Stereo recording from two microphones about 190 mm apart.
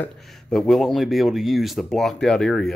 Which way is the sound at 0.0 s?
Centre (ahead or behind).